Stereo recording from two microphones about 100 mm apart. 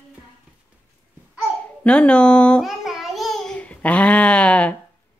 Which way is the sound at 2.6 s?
Centre (ahead or behind).